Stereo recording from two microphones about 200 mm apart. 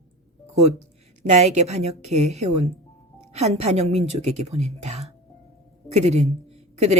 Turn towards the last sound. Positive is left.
turn(degrees=-30)  # may be behind; listen again after turning